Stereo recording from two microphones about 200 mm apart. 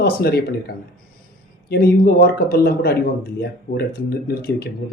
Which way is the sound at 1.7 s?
50° left (ahead or behind).